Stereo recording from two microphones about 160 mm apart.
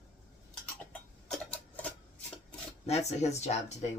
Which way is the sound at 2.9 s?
45° left (ahead or behind).